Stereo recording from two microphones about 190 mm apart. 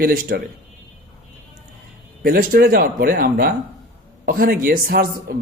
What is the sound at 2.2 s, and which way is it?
A man's voice, 50° right (ahead or behind).